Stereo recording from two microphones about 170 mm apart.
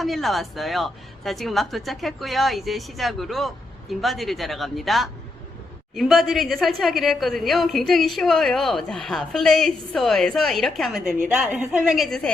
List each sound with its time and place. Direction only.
0.0 s a woman's voice: centre (ahead or behind)